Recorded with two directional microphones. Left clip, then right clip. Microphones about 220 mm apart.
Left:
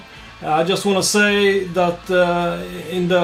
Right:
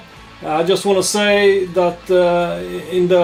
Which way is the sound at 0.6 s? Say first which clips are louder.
Right 3 dB; 25° left (ahead or behind).